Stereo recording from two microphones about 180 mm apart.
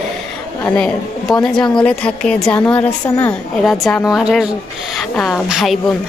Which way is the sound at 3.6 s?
Centre (ahead or behind).